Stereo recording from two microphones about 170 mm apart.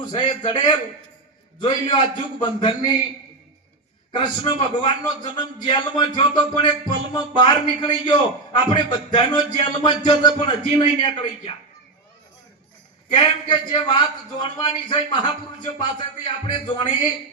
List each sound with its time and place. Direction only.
0.1 s a man's voice: 25° left (ahead or behind)
4.1 s a man's voice: 30° left (ahead or behind)
13.1 s a man's voice: 25° left (ahead or behind)